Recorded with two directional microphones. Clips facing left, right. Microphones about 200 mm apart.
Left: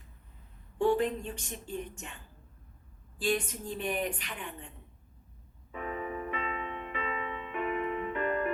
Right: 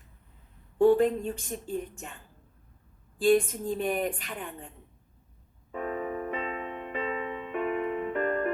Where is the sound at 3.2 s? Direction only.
50° right (ahead or behind).